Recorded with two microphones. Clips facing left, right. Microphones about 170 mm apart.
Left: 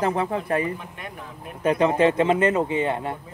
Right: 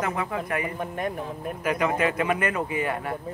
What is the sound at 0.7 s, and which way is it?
Speech, 45° right (ahead or behind).